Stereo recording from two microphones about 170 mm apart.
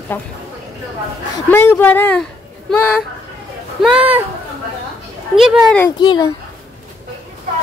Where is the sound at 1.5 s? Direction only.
10° left (ahead or behind).